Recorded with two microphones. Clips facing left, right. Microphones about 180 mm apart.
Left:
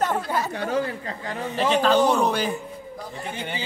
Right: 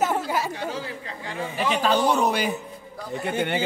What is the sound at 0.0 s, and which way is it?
Chatter, 10° right (ahead or behind).